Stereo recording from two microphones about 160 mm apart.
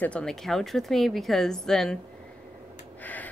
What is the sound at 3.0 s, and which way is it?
Gasp, 10° left (ahead or behind).